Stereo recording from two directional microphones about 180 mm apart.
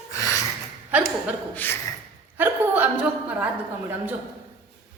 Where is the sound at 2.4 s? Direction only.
10° right (ahead or behind).